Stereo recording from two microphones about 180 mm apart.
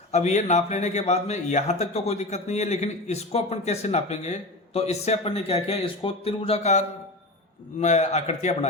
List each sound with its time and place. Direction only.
0.1 s a man's voice: 40° left (ahead or behind)